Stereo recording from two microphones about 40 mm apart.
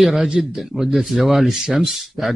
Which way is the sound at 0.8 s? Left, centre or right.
Centre.